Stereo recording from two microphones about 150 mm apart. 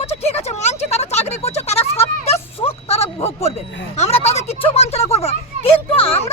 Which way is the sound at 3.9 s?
45° left (ahead or behind).